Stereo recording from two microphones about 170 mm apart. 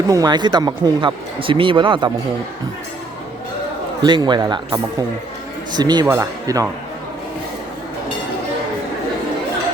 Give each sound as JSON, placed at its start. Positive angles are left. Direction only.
{"t": 0.1, "sound": "speech", "side_deg": -25}
{"t": 4.0, "sound": "speech", "side_deg": -25}